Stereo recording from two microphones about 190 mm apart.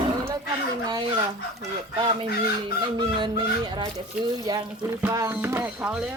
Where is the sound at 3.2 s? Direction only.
25° right (ahead or behind).